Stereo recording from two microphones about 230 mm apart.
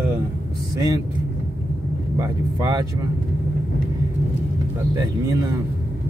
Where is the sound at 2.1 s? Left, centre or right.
Centre.